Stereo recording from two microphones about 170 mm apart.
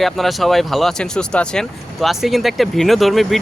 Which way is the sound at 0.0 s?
Centre (ahead or behind).